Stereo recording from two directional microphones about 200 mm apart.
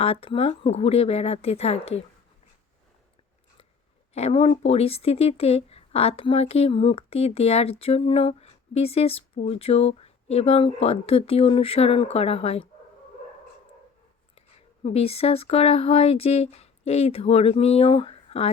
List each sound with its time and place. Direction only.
0.0 s speech: 30° left (ahead or behind)
4.1 s speech: 30° left (ahead or behind)
14.8 s speech: 30° left (ahead or behind)